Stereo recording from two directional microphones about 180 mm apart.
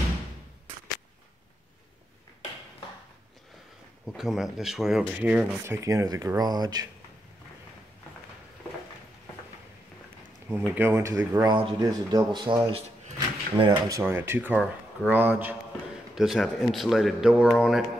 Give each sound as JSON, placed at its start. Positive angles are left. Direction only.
{"t": 4.1, "sound": "speech", "side_deg": 0}
{"t": 5.7, "sound": "speech", "side_deg": -15}
{"t": 10.5, "sound": "speech", "side_deg": -10}
{"t": 11.4, "sound": "speech", "side_deg": -25}